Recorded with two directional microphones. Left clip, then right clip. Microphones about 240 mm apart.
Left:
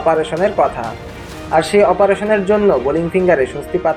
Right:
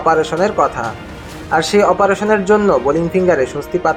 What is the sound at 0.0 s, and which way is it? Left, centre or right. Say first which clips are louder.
A man's voice: right 1 dB; centre.